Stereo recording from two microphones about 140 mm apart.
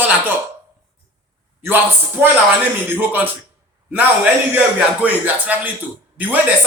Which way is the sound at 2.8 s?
15° right (ahead or behind).